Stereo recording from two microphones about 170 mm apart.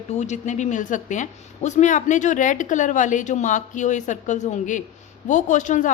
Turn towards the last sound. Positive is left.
turn(degrees=45)  # may be behind; listen again after turning